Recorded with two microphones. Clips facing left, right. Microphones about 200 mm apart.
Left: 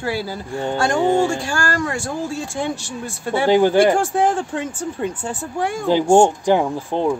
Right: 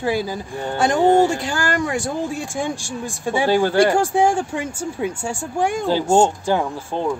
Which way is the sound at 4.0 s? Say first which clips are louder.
Right 1 dB; 10° right (ahead or behind).